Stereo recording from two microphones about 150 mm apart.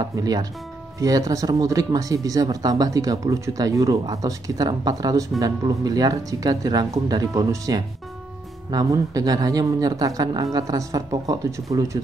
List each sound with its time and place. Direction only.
0.1 s speech: 25° right (ahead or behind)